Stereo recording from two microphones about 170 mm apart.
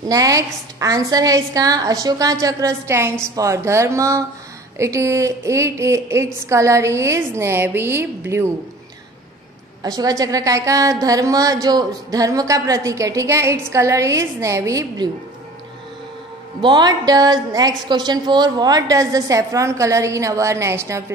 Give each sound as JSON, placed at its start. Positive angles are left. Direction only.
{"t": 0.0, "sound": "a woman's voice", "side_deg": -20}
{"t": 9.8, "sound": "a woman's voice", "side_deg": -20}
{"t": 16.6, "sound": "a woman's voice", "side_deg": -25}